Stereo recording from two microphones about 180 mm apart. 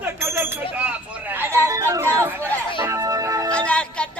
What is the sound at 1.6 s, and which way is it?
Music, 15° right (ahead or behind).